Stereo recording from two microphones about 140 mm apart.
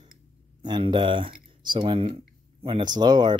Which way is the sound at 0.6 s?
35° right (ahead or behind).